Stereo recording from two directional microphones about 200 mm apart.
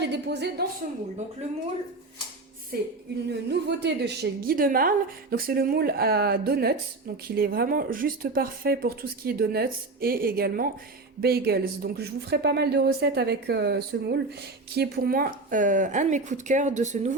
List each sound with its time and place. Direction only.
0.0 s a woman's voice: 60° right (ahead or behind)
2.7 s a woman's voice: 50° right (ahead or behind)